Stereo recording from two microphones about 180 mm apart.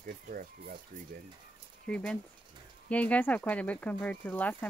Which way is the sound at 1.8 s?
5° left (ahead or behind).